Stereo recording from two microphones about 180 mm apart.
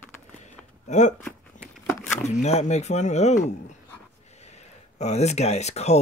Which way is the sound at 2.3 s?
40° left (ahead or behind).